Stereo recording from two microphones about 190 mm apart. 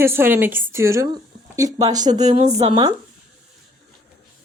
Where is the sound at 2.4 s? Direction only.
35° right (ahead or behind).